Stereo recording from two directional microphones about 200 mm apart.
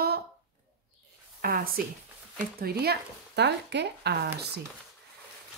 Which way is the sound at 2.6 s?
55° right (ahead or behind).